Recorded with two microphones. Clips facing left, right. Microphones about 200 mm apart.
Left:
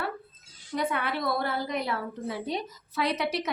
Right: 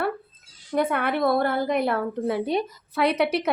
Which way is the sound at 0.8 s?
55° right (ahead or behind).